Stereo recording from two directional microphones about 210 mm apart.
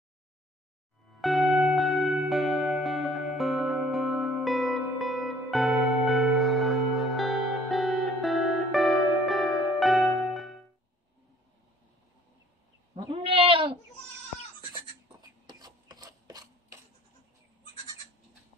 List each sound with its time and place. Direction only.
1.2 s music: centre (ahead or behind)
12.9 s goat: 25° right (ahead or behind)
14.7 s a sound: 20° right (ahead or behind)